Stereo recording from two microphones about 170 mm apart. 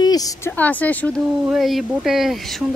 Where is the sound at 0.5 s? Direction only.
10° left (ahead or behind).